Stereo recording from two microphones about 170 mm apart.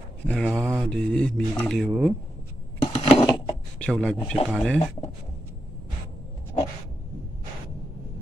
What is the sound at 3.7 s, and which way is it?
Speech, 5° left (ahead or behind).